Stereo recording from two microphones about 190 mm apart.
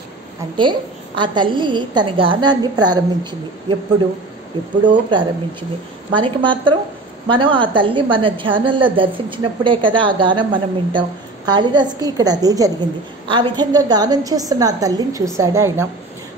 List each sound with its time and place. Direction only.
0.6 s a woman's voice: 25° right (ahead or behind)
4.8 s a woman's voice: 25° right (ahead or behind)